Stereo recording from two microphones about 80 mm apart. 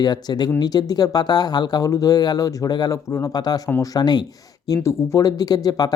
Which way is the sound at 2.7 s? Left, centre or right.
Left.